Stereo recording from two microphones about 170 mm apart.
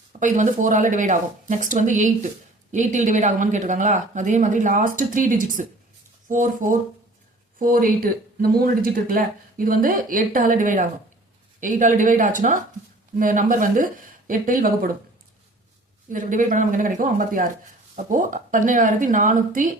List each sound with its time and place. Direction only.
0.1 s speech: 45° right (ahead or behind)
16.0 s speech: 50° right (ahead or behind)